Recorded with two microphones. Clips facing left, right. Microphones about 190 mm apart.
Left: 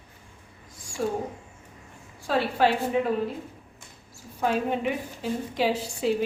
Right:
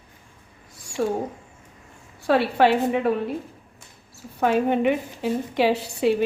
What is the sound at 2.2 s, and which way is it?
Speech, 65° right (ahead or behind).